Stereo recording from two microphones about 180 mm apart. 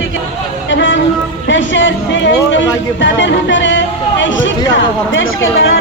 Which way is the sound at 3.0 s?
90° left.